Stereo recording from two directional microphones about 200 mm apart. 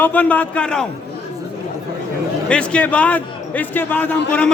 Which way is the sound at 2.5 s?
5° left (ahead or behind).